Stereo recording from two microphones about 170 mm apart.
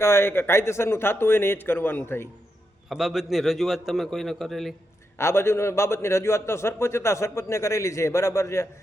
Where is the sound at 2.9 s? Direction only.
5° right (ahead or behind).